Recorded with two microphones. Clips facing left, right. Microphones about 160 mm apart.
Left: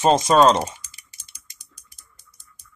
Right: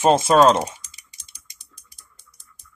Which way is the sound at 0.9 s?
20° right (ahead or behind).